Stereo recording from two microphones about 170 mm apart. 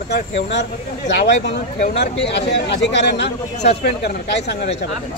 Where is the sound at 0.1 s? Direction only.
90° left.